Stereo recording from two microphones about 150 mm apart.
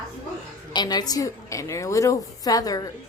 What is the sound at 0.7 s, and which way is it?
A woman's voice, 30° left (ahead or behind).